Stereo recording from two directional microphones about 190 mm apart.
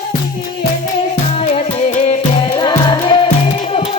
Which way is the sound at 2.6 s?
25° left (ahead or behind).